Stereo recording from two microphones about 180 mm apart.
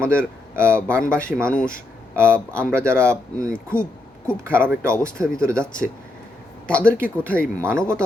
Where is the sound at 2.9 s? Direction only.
15° right (ahead or behind).